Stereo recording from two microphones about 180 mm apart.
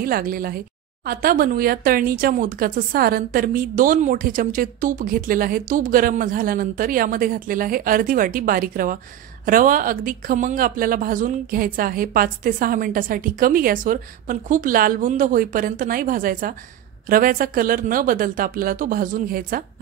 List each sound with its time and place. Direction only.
0.0 s speech: 55° right (ahead or behind)